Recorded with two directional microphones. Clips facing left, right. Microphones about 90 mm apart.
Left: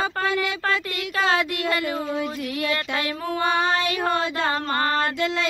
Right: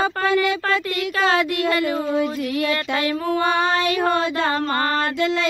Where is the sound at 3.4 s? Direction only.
20° left (ahead or behind).